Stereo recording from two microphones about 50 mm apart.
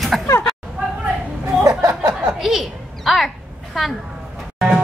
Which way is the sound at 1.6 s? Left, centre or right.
Right.